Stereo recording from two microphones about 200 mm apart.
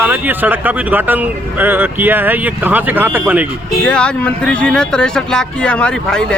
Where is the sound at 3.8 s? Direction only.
5° left (ahead or behind).